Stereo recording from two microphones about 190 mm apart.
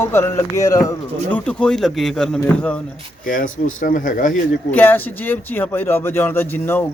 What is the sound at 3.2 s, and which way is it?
Speech, 45° left (ahead or behind).